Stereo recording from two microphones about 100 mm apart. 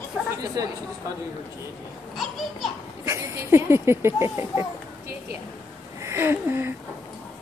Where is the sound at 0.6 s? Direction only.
35° right (ahead or behind).